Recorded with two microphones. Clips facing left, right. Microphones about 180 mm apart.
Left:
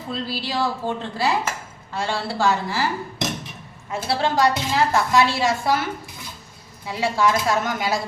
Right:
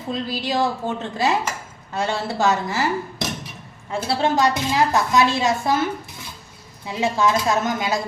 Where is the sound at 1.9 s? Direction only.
20° right (ahead or behind).